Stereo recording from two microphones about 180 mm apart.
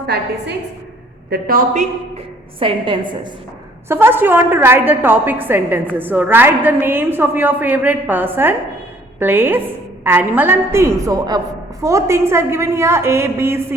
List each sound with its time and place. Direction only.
1.3 s a man's voice: 55° right (ahead or behind)
2.6 s a woman's voice: 30° right (ahead or behind)
3.8 s a woman's voice: 15° right (ahead or behind)